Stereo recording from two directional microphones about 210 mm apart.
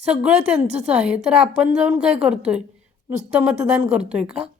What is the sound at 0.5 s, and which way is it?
Speech, 30° right (ahead or behind).